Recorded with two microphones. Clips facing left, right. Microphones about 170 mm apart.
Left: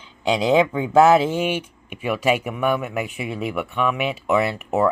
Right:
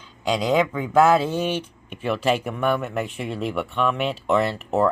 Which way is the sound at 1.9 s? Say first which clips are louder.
Left 1 dB; 10° left (ahead or behind).